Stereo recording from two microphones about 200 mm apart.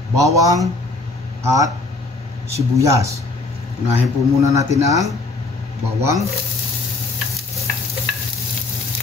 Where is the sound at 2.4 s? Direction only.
15° right (ahead or behind).